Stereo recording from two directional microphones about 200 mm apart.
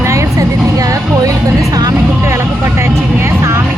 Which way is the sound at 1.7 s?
15° right (ahead or behind).